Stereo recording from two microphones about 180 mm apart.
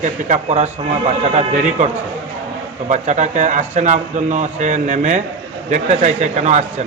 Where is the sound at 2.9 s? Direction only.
40° right (ahead or behind).